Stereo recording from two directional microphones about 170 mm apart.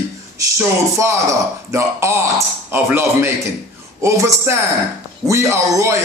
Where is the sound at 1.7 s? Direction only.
15° right (ahead or behind).